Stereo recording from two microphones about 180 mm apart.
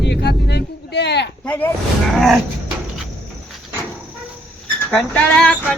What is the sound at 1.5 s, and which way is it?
Speech, 10° left (ahead or behind).